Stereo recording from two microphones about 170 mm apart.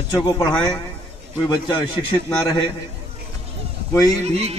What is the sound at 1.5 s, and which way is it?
Speech, 25° left (ahead or behind).